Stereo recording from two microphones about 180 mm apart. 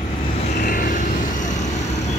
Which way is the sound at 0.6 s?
50° left (ahead or behind).